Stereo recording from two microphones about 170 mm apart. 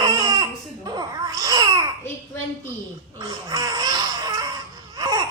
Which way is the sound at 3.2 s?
25° right (ahead or behind).